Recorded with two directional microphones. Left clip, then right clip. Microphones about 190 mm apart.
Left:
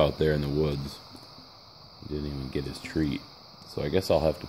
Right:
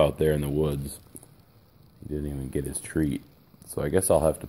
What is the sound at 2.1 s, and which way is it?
Speech, 5° left (ahead or behind).